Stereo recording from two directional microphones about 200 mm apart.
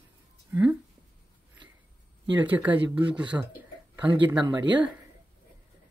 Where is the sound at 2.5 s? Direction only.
10° right (ahead or behind).